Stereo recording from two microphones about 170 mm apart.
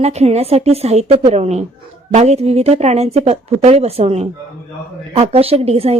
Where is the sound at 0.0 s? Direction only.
40° right (ahead or behind).